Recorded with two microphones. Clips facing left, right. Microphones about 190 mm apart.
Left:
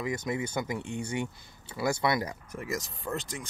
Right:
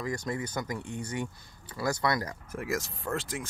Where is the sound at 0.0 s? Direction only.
20° left (ahead or behind).